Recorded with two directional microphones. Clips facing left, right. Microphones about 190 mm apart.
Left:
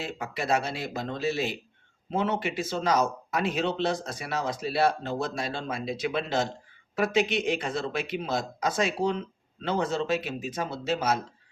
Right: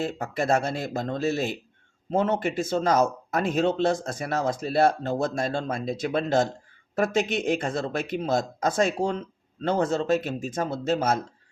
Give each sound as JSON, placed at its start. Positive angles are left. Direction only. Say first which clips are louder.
{"t": 0.0, "sound": "speech", "louder": "right 6 dB", "side_deg": -45}